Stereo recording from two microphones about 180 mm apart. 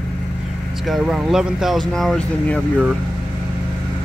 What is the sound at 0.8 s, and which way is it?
Speech, centre (ahead or behind).